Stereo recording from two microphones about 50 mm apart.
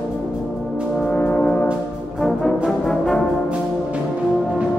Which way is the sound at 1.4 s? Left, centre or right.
Left.